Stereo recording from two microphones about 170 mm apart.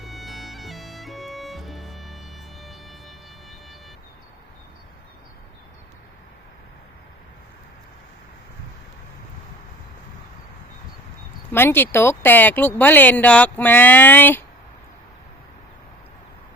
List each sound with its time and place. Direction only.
0.0 s music: centre (ahead or behind)
11.5 s speech: 10° left (ahead or behind)